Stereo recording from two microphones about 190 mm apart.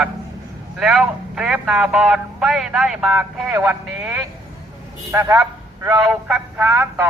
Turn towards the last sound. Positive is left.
turn(degrees=-10)  # may be behind; listen again after turning